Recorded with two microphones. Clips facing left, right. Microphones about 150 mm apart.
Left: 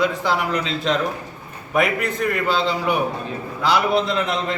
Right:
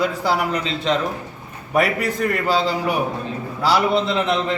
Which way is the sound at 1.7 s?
40° right (ahead or behind).